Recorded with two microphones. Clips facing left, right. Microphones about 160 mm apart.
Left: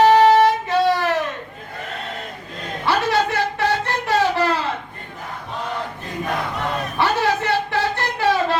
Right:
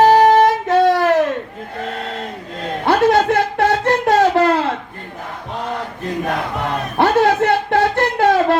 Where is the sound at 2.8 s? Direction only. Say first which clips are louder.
Right 6 dB; 55° right (ahead or behind).